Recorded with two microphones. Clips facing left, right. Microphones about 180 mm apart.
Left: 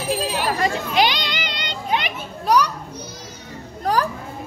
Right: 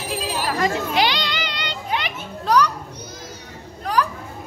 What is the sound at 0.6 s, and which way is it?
Children playing, 15° left (ahead or behind).